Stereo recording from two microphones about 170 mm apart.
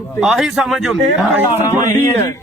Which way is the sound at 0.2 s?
5° right (ahead or behind).